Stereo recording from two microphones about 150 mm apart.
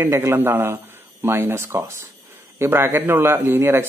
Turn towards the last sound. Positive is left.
turn(degrees=-15)  # may be behind; listen again after turning